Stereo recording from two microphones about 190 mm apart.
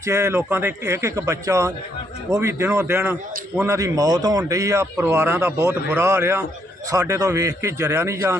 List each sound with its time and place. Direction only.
0.0 s a man's voice: 15° right (ahead or behind)